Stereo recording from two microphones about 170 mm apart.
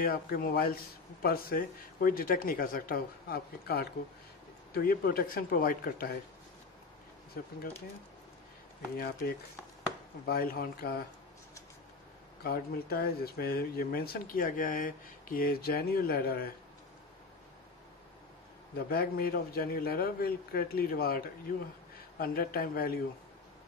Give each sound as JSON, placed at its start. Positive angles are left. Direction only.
{"t": 0.0, "sound": "speech", "side_deg": 60}
{"t": 7.3, "sound": "speech", "side_deg": 60}
{"t": 8.9, "sound": "speech", "side_deg": 60}
{"t": 12.4, "sound": "speech", "side_deg": 65}
{"t": 18.9, "sound": "speech", "side_deg": 60}